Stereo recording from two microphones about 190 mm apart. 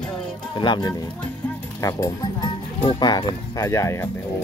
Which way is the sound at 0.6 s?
25° left (ahead or behind).